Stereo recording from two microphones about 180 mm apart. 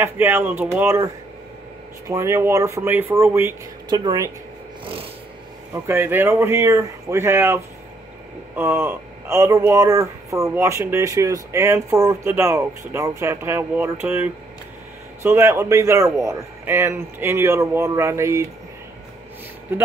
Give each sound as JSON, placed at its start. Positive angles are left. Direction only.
{"t": 0.0, "sound": "speech", "side_deg": -10}
{"t": 5.9, "sound": "speech", "side_deg": -10}